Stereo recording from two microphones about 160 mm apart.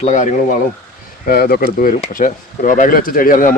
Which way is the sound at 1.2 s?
70° left (ahead or behind).